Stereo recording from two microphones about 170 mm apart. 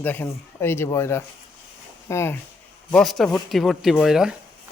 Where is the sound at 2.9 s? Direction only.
Centre (ahead or behind).